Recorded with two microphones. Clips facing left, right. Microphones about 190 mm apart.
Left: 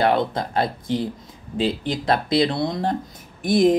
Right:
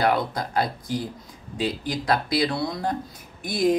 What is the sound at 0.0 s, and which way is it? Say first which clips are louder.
Speech: left 3 dB; 25° left (ahead or behind).